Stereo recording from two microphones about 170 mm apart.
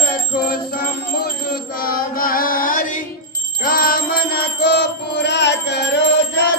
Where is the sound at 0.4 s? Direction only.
60° left (ahead or behind); by 5.9 s 85° left.